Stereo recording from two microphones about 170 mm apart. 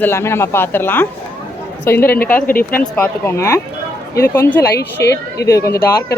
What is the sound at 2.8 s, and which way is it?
Speech, 10° left (ahead or behind).